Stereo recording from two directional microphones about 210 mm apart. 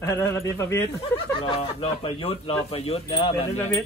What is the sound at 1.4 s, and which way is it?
Speech, 25° left (ahead or behind).